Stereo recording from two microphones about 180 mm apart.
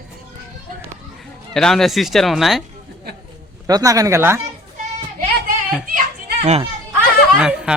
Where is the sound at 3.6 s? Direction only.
20° right (ahead or behind).